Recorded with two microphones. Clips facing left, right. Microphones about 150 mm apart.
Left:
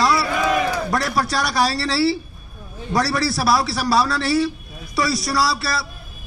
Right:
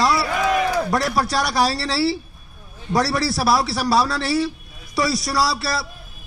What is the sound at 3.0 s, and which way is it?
A man's voice, 30° right (ahead or behind).